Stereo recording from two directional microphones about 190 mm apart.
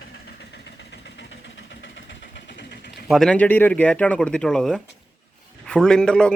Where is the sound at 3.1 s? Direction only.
Centre (ahead or behind).